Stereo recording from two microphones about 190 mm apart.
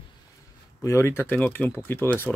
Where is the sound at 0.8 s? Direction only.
15° left (ahead or behind).